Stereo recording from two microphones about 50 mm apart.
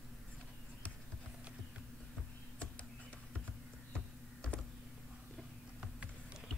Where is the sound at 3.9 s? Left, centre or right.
Centre.